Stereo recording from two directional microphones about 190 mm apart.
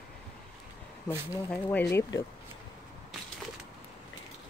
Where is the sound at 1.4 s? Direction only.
5° left (ahead or behind).